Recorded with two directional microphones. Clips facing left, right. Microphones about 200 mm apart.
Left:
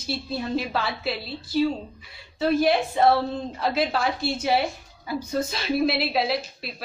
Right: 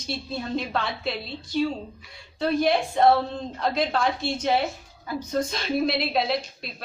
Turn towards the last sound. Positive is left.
turn(degrees=5)  # may be behind; listen again after turning